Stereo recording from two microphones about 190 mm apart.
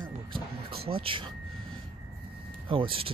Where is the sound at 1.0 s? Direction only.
25° right (ahead or behind).